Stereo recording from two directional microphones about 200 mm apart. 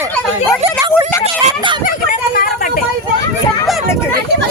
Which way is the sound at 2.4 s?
45° left (ahead or behind).